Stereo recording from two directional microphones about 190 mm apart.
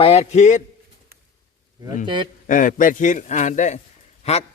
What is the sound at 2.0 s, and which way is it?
Speech, 25° right (ahead or behind).